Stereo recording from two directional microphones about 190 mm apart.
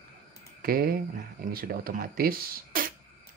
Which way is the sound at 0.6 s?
50° right (ahead or behind).